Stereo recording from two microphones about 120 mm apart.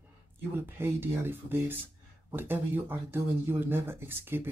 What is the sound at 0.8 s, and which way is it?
Speech, 20° right (ahead or behind).